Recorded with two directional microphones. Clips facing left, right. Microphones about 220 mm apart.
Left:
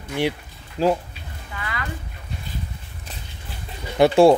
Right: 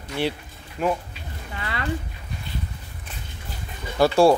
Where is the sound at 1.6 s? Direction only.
30° right (ahead or behind).